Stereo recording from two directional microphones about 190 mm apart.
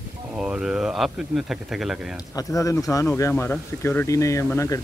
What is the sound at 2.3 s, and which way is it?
Speech, 15° left (ahead or behind).